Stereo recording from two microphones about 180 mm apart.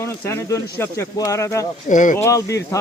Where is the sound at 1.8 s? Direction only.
45° left (ahead or behind).